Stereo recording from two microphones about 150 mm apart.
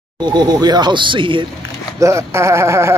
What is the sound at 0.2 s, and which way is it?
Speech, 30° right (ahead or behind).